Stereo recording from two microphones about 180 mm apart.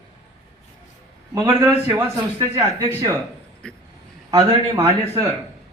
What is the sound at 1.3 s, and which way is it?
A man's voice, 20° right (ahead or behind).